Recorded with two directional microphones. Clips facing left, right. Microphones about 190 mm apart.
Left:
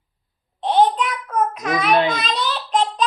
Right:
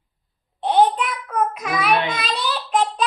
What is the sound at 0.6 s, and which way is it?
Child singing, 10° right (ahead or behind).